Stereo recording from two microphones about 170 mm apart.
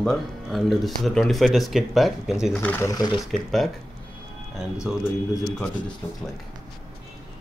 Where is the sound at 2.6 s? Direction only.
15° left (ahead or behind).